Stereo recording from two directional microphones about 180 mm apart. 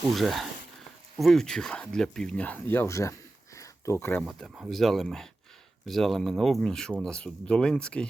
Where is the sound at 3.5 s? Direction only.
15° left (ahead or behind).